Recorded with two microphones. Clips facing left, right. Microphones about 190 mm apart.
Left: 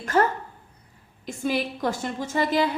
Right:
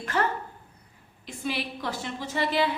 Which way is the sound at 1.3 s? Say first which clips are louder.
Left 6 dB; 45° left (ahead or behind).